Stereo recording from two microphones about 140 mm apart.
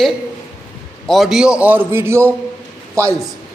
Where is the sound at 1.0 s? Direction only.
Centre (ahead or behind); by 3.1 s 20° right (ahead or behind).